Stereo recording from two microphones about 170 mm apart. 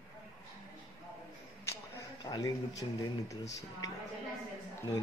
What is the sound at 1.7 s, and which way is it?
Speech, 20° left (ahead or behind).